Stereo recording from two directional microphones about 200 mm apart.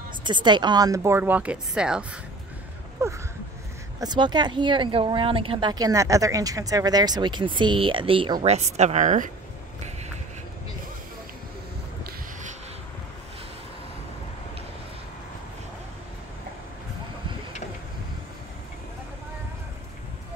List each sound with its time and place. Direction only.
0.2 s a woman's voice: 25° right (ahead or behind)